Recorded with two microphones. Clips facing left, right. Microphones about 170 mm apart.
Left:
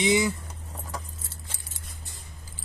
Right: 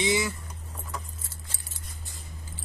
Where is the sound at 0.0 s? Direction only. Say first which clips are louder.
Left 3 dB; 20° left (ahead or behind).